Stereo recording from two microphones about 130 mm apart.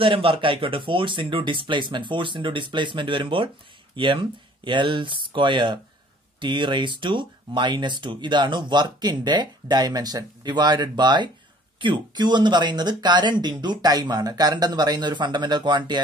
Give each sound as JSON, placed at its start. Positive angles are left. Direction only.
{"t": 0.0, "sound": "speech", "side_deg": -45}